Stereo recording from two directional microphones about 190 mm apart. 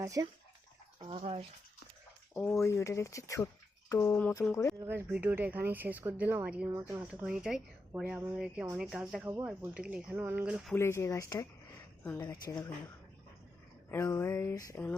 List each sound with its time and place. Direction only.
0.0 s speech: 15° right (ahead or behind)
1.0 s speech: 30° right (ahead or behind)
2.3 s speech: 10° left (ahead or behind)
4.8 s speech: 10° right (ahead or behind)
7.1 s speech: 5° right (ahead or behind)
10.8 s speech: 15° left (ahead or behind)
13.9 s speech: 15° left (ahead or behind)